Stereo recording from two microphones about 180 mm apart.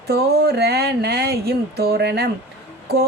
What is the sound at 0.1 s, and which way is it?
Speech, 65° right (ahead or behind).